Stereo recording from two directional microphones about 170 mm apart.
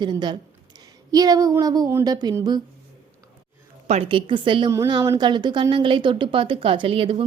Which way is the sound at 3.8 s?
35° right (ahead or behind).